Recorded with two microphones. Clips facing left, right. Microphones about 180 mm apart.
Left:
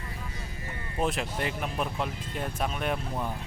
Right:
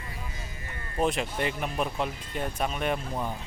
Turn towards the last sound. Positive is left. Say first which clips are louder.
# right 1 dB
turn(degrees=0)  # may be behind; listen again after turning